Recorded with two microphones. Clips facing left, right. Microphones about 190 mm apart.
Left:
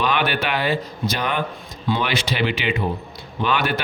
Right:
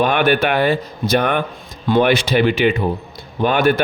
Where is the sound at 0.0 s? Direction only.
50° right (ahead or behind).